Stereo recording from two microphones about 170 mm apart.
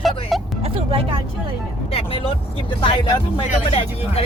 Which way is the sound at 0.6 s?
35° right (ahead or behind).